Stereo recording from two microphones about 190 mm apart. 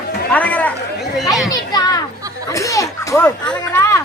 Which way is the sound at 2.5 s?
15° left (ahead or behind).